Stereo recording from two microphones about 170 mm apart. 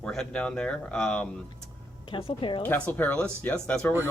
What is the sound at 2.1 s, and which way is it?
Speech, 30° left (ahead or behind).